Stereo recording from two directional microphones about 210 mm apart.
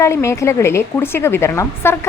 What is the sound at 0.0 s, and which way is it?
A woman's voice, 15° left (ahead or behind).